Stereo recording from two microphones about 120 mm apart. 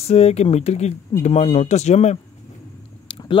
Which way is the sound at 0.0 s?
60° left (ahead or behind).